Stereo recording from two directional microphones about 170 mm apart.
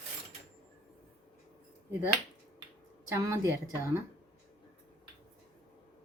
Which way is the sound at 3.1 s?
15° right (ahead or behind).